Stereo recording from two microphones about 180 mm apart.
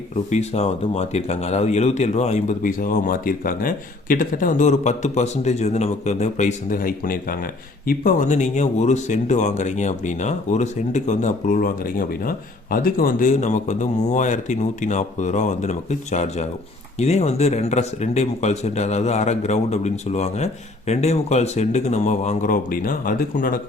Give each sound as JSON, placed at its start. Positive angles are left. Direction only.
{"t": 0.3, "sound": "speech", "side_deg": 40}